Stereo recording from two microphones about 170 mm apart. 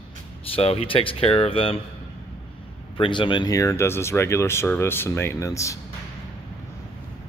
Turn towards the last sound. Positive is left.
turn(degrees=20)  # may be behind; listen again after turning